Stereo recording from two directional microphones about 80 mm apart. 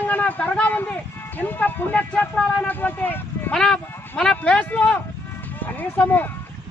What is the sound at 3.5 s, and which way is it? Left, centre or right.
Speech, centre.